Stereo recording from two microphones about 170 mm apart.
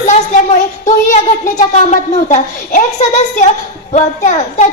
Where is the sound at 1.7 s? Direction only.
45° left (ahead or behind).